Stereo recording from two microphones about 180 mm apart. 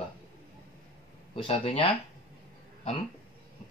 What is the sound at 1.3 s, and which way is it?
Speech, 30° left (ahead or behind).